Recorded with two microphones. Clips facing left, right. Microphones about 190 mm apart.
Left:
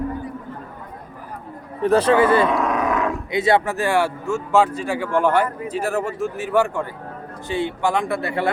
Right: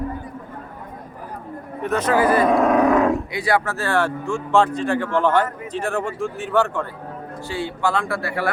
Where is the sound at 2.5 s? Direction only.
55° right (ahead or behind).